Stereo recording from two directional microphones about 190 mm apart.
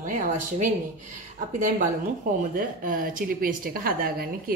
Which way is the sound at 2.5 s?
45° right (ahead or behind).